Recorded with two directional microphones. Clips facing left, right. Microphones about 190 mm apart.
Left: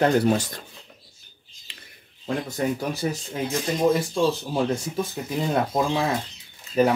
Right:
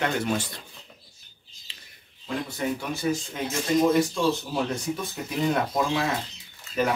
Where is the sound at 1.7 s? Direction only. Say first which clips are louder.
Left 4 dB; 60° left (ahead or behind).